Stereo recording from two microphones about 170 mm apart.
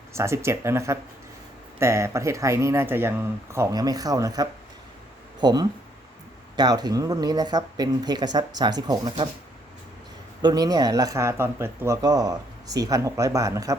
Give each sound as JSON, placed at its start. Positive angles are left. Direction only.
{"t": 0.1, "sound": "speech", "side_deg": -15}
{"t": 10.4, "sound": "speech", "side_deg": -20}